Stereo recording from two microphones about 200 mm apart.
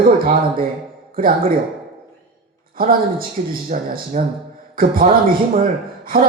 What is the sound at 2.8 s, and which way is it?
A man's voice, 45° right (ahead or behind).